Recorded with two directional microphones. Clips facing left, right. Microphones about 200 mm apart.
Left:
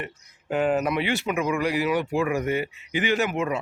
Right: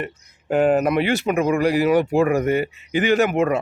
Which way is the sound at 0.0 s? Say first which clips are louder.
Right 6 dB; 45° right (ahead or behind).